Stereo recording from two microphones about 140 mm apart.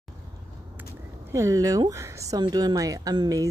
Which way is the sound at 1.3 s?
20° right (ahead or behind).